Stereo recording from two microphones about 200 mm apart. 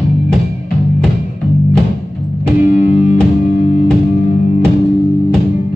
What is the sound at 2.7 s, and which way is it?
Music, 35° left (ahead or behind).